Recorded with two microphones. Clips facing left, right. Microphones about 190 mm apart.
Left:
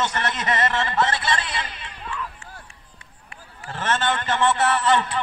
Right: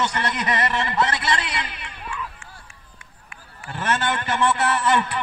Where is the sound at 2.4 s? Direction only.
35° left (ahead or behind).